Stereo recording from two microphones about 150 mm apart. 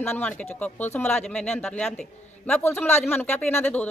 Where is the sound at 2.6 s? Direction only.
15° left (ahead or behind).